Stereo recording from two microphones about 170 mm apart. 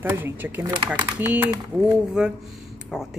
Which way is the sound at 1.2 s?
15° right (ahead or behind).